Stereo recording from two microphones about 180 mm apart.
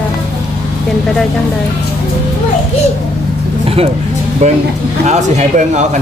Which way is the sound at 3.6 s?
35° right (ahead or behind).